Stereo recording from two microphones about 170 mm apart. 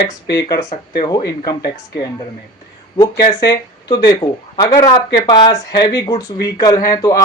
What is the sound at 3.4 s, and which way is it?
Speech, 20° left (ahead or behind).